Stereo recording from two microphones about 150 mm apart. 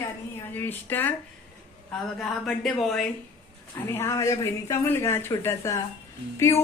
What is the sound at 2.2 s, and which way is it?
Speech, 5° left (ahead or behind).